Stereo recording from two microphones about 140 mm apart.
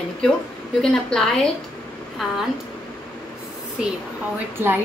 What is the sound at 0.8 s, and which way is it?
Speech, 5° left (ahead or behind).